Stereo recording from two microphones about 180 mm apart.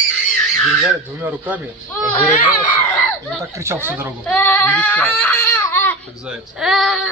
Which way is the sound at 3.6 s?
15° right (ahead or behind).